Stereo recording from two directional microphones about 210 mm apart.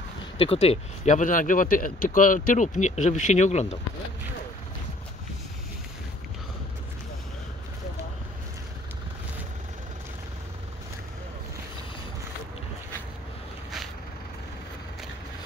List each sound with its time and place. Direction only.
0.4 s speech: 30° left (ahead or behind)